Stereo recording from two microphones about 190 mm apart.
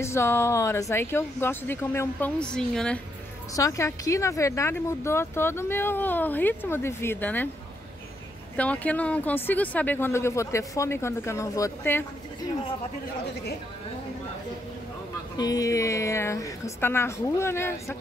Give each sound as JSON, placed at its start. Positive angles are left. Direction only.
{"t": 0.0, "sound": "speech", "side_deg": 15}
{"t": 3.5, "sound": "speech", "side_deg": 15}
{"t": 8.5, "sound": "speech", "side_deg": 5}
{"t": 15.3, "sound": "speech", "side_deg": 20}